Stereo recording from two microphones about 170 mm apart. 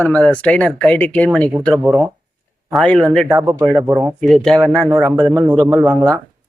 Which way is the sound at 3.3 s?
15° right (ahead or behind).